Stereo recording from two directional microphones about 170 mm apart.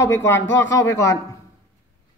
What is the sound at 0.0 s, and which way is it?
Speech, 15° left (ahead or behind).